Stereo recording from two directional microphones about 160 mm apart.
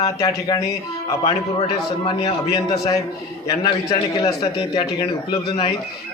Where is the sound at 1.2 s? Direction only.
30° left (ahead or behind).